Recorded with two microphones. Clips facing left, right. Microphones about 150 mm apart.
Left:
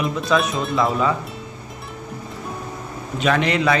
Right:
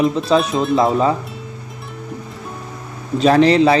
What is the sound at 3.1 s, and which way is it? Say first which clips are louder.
Speech: right 8 dB; 35° right (ahead or behind).